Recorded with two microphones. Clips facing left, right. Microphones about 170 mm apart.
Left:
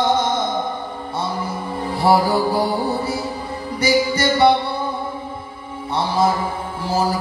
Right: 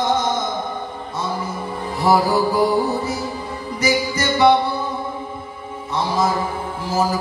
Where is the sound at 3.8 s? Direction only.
30° left (ahead or behind).